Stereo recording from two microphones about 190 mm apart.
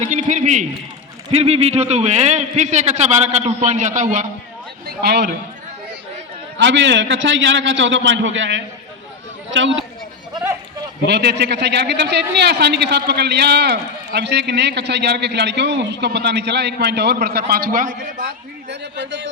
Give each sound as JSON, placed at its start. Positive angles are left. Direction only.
{"t": 0.0, "sound": "a man's voice", "side_deg": -40}
{"t": 4.9, "sound": "a man's voice", "side_deg": -60}
{"t": 6.6, "sound": "a man's voice", "side_deg": -75}
{"t": 11.0, "sound": "a man's voice", "side_deg": -60}